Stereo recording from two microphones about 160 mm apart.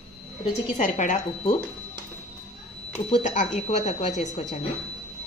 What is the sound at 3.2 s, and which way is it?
Speech, 50° left (ahead or behind).